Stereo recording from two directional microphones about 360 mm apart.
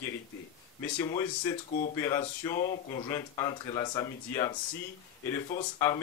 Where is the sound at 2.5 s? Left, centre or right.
Left.